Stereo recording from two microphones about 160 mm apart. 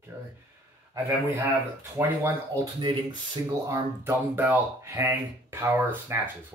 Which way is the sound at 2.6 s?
30° right (ahead or behind).